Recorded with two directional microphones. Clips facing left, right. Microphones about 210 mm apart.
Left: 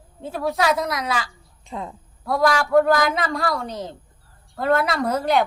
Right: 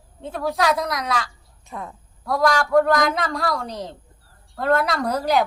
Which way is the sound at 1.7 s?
20° left (ahead or behind).